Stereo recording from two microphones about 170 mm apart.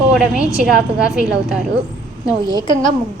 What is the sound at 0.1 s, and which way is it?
A woman's voice, 5° right (ahead or behind).